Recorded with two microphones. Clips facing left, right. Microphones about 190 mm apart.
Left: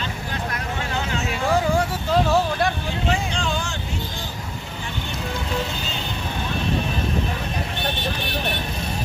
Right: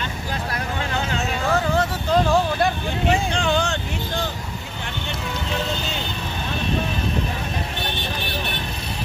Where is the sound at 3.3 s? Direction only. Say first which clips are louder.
Right 5 dB; 65° right (ahead or behind).